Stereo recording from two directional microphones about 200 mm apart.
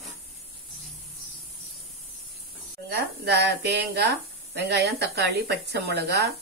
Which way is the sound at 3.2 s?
55° right (ahead or behind).